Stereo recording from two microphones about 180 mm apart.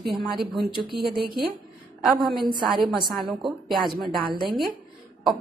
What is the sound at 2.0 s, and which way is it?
Speech, centre (ahead or behind).